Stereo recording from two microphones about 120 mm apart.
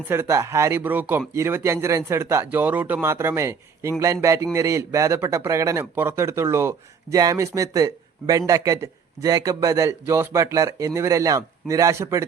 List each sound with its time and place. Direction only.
0.1 s speech: 20° right (ahead or behind)